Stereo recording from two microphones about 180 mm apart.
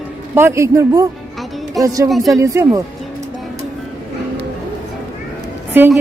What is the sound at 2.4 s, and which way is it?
Speech, 15° right (ahead or behind).